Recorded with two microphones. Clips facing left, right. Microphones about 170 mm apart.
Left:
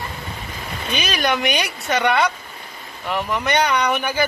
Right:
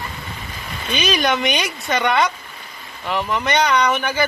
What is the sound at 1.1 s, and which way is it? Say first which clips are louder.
A man's voice: right 2 dB; centre (ahead or behind).